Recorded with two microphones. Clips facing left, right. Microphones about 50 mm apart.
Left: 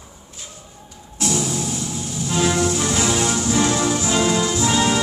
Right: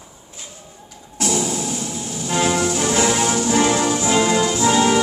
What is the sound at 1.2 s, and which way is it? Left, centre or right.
Vehicle, right.